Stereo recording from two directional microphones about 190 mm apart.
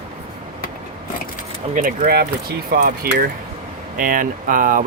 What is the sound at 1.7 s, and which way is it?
Speech, 45° right (ahead or behind).